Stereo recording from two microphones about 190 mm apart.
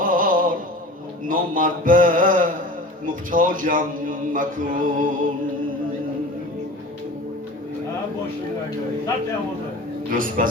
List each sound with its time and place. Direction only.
0.0 s a sound: 45° right (ahead or behind)
1.3 s a man's voice: 45° right (ahead or behind)
10.1 s a man's voice: 45° right (ahead or behind)